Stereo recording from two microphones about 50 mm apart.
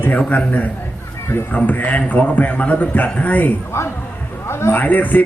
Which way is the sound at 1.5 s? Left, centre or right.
Left.